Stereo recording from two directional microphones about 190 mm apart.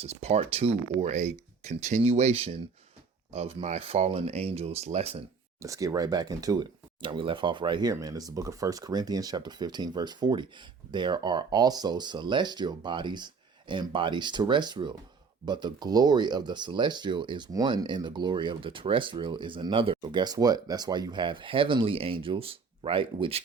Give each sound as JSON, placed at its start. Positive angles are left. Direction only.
{"t": 0.0, "sound": "speech", "side_deg": -35}
{"t": 5.5, "sound": "speech", "side_deg": -15}